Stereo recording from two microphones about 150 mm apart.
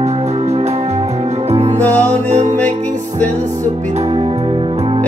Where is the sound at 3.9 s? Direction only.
40° right (ahead or behind).